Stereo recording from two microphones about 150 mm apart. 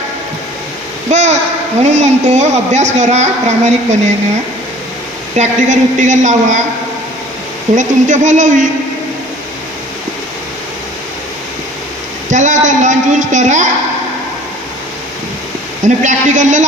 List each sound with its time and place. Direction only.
1.1 s a sound: 50° right (ahead or behind)
1.8 s a woman's voice: 50° right (ahead or behind)
5.4 s a woman's voice: 55° right (ahead or behind)
7.8 s a woman's voice: 55° right (ahead or behind)
12.3 s a woman's voice: 55° right (ahead or behind)
15.8 s a woman's voice: 55° right (ahead or behind)